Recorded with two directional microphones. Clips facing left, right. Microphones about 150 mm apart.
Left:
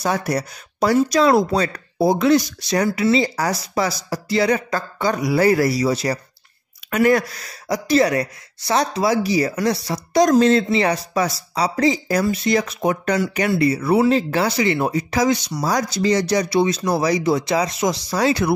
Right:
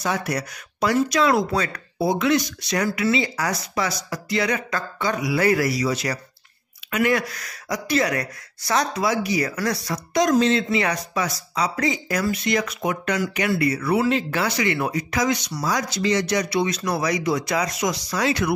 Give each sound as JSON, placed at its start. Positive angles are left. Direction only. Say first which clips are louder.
{"t": 0.0, "sound": "speech", "louder": "left 4 dB", "side_deg": 35}
{"t": 10.2, "sound": "speech", "louder": "left 4 dB", "side_deg": 40}